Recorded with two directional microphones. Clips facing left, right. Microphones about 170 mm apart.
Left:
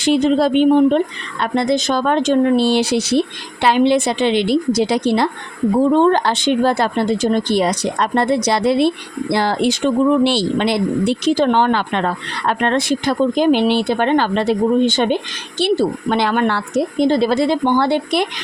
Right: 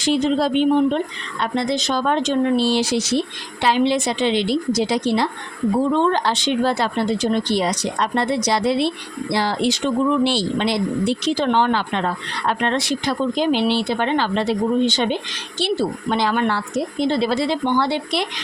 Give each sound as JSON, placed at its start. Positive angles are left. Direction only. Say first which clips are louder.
{"t": 0.0, "sound": "speech", "louder": "left 4 dB", "side_deg": 60}
{"t": 5.9, "sound": "speech", "louder": "left 5 dB", "side_deg": 45}
{"t": 11.3, "sound": "speech", "louder": "left 4 dB", "side_deg": 45}
{"t": 17.1, "sound": "speech", "louder": "left 3 dB", "side_deg": 45}